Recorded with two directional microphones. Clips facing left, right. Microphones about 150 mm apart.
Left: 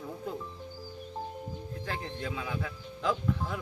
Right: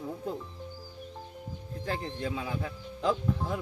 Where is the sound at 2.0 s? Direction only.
30° right (ahead or behind).